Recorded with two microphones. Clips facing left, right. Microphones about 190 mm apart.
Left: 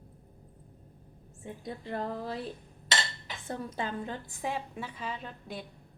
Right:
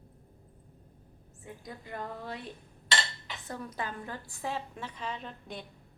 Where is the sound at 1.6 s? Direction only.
30° left (ahead or behind).